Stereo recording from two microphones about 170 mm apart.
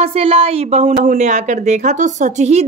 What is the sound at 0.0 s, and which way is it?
A woman's voice, 35° right (ahead or behind).